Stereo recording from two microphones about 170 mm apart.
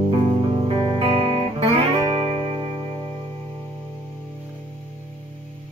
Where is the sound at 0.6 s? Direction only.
30° right (ahead or behind).